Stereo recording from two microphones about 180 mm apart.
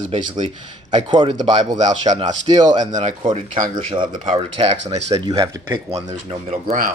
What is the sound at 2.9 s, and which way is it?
Speech, 45° right (ahead or behind).